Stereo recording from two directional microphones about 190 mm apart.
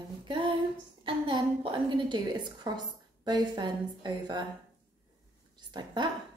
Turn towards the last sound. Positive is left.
turn(degrees=-20)  # may be behind; listen again after turning